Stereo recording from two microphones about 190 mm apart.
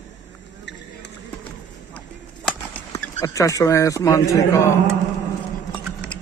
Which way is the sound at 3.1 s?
15° left (ahead or behind).